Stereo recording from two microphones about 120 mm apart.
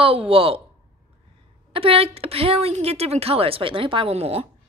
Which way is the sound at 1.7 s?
50° right (ahead or behind).